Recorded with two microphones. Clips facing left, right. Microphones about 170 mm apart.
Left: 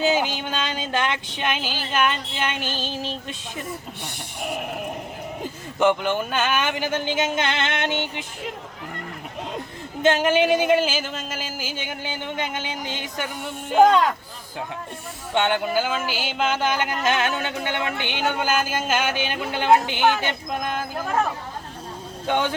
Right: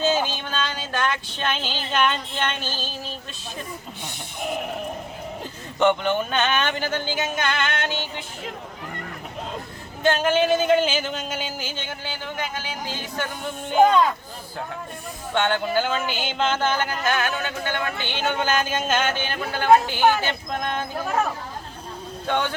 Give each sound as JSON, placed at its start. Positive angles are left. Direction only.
{"t": 0.0, "sound": "speech", "side_deg": 15}
{"t": 5.4, "sound": "speech", "side_deg": 5}
{"t": 10.0, "sound": "speech", "side_deg": 20}
{"t": 15.4, "sound": "speech", "side_deg": 15}
{"t": 20.2, "sound": "speech", "side_deg": 5}
{"t": 22.3, "sound": "speech", "side_deg": 15}